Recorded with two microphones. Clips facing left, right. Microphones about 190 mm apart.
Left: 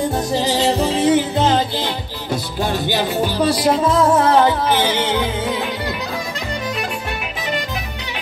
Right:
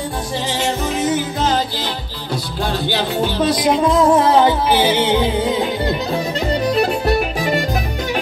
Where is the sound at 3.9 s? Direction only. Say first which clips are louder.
Right 2 dB; 20° right (ahead or behind); by 7.7 s 45° right (ahead or behind).